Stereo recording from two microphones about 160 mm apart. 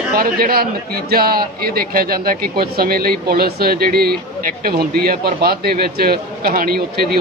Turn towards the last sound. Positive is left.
turn(degrees=-75)  # may be behind; listen again after turning